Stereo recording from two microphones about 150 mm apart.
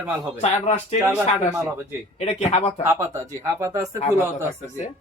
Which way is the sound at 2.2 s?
45° left (ahead or behind).